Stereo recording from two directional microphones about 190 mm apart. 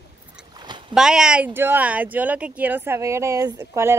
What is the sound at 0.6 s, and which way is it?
Rowboat, 25° right (ahead or behind).